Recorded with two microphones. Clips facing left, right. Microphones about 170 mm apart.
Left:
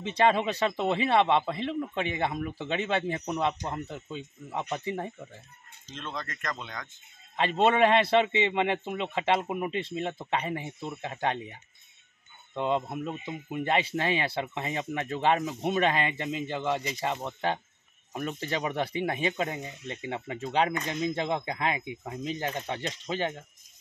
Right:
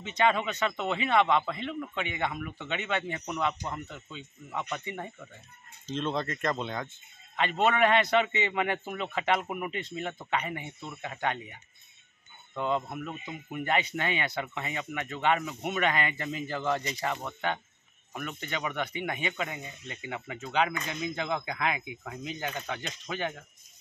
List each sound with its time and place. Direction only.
0.0 s speech: 30° left (ahead or behind)
5.9 s speech: 25° right (ahead or behind)
7.3 s a man's voice: 30° left (ahead or behind)